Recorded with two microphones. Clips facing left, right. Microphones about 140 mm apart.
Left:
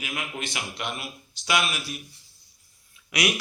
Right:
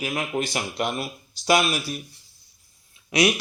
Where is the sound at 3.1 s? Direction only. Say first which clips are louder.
Right 6 dB; 25° right (ahead or behind).